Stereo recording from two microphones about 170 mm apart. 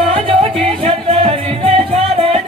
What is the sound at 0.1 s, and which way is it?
Music, 35° right (ahead or behind).